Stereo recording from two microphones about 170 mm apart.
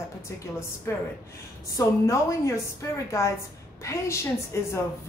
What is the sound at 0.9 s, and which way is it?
A woman's voice, 15° left (ahead or behind).